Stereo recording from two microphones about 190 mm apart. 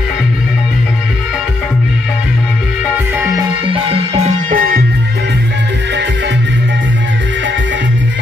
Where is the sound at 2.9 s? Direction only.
10° right (ahead or behind); by 4.8 s 50° right (ahead or behind).